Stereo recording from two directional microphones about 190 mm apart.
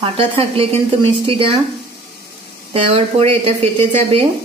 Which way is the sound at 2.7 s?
30° right (ahead or behind).